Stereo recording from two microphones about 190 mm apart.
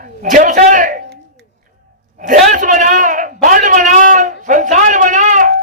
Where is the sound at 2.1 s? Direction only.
45° right (ahead or behind).